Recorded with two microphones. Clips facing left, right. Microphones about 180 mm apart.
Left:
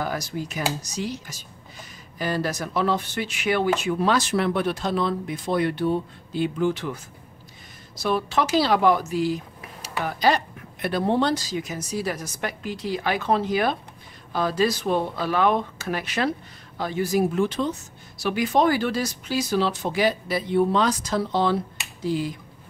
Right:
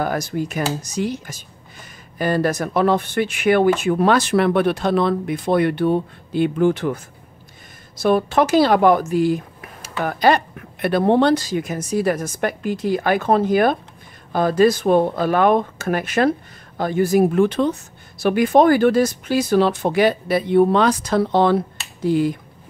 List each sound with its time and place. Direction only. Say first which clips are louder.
0.0 s speech: right 6 dB; 55° right (ahead or behind)
8.0 s speech: right 7 dB; 50° right (ahead or behind)